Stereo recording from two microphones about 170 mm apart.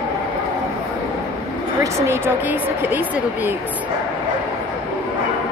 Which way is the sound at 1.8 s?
10° right (ahead or behind).